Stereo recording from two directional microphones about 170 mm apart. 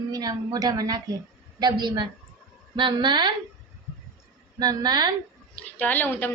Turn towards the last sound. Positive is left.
turn(degrees=10)  # may be behind; listen again after turning